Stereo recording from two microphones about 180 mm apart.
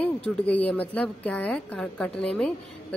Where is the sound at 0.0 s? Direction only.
10° left (ahead or behind).